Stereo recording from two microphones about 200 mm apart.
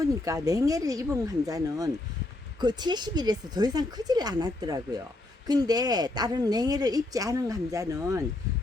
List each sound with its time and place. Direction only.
0.3 s a woman's voice: 15° right (ahead or behind)